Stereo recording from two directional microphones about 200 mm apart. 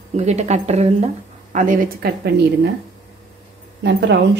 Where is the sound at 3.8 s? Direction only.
60° right (ahead or behind).